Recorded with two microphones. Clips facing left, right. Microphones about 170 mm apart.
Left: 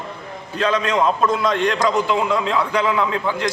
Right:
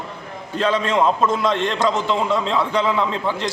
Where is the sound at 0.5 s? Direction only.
30° right (ahead or behind).